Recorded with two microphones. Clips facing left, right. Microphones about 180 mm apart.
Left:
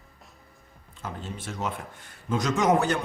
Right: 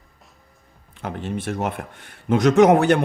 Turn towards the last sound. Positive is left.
turn(degrees=-65)  # may be behind; listen again after turning